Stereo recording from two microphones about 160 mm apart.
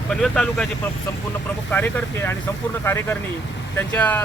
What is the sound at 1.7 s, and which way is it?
Speech, 10° left (ahead or behind).